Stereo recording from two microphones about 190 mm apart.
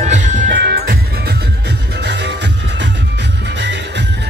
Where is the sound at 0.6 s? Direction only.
60° right (ahead or behind).